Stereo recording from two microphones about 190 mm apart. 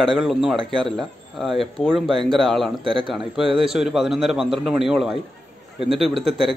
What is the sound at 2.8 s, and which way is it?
Speech, 25° right (ahead or behind).